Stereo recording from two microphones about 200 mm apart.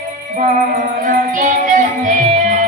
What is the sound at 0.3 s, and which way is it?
Music, 40° right (ahead or behind).